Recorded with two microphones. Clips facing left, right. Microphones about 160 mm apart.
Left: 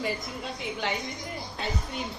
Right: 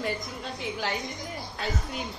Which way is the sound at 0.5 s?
Centre (ahead or behind).